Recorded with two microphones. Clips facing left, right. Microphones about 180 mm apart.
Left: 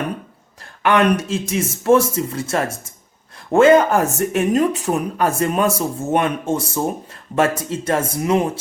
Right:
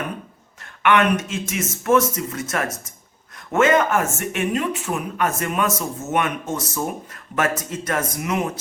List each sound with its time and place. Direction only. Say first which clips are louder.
0.6 s speech: left 2 dB; 35° left (ahead or behind)